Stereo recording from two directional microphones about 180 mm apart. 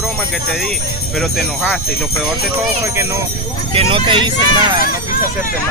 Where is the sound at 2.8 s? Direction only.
15° right (ahead or behind).